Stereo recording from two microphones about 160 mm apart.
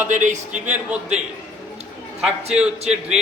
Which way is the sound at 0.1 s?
50° right (ahead or behind).